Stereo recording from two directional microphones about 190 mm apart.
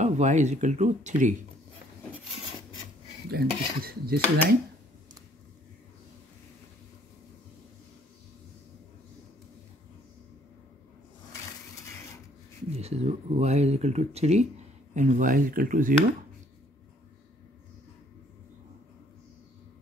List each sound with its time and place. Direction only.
0.0 s speech: 40° right (ahead or behind)
3.3 s cutlery: 55° right (ahead or behind)
12.6 s speech: 35° right (ahead or behind)